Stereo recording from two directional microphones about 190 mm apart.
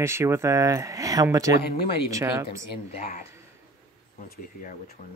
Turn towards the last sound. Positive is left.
turn(degrees=50)  # may be behind; listen again after turning